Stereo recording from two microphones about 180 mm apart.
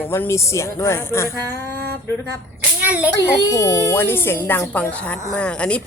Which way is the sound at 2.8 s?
10° right (ahead or behind).